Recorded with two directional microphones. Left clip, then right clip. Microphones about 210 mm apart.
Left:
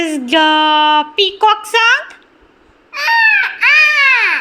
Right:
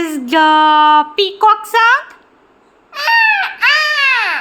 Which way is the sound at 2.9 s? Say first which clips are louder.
Even; 25° right (ahead or behind).